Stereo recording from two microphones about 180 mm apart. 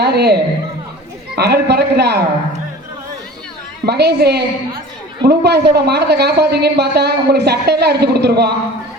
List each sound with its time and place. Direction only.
0.0 s a man's voice: 65° right (ahead or behind)
1.4 s a man's voice: 65° right (ahead or behind)
3.8 s speech: 65° right (ahead or behind)